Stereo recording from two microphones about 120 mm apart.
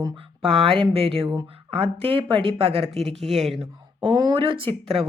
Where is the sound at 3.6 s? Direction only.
45° right (ahead or behind).